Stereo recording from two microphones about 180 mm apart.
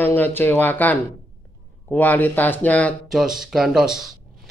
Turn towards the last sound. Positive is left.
turn(degrees=0)  # may be behind; listen again after turning